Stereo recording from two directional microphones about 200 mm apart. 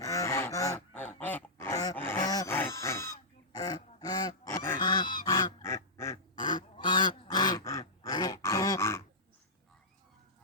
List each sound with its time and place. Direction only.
0.0 s goose: 15° left (ahead or behind)
1.2 s a sound: 10° left (ahead or behind)
4.8 s goose: 20° left (ahead or behind)